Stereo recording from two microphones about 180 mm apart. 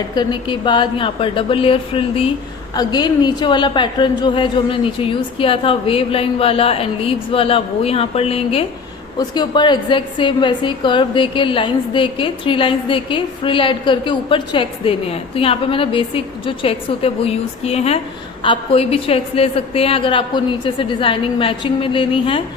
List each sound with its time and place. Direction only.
0.1 s a woman's voice: 25° left (ahead or behind)